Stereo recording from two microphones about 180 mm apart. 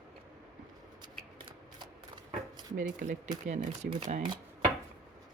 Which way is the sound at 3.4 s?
40° right (ahead or behind).